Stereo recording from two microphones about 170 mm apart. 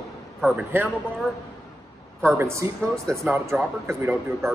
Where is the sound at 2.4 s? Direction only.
15° right (ahead or behind).